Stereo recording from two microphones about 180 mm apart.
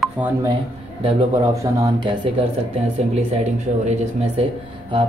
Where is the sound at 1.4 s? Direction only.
20° right (ahead or behind).